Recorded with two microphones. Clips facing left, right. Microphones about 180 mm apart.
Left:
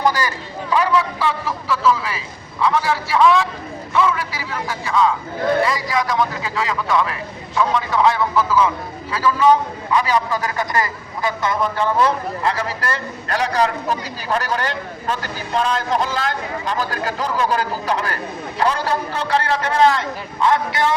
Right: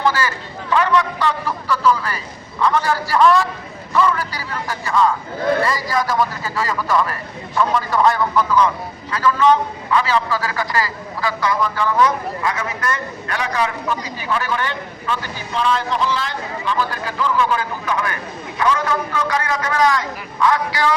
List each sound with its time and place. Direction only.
0.0 s a man's voice: 15° left (ahead or behind)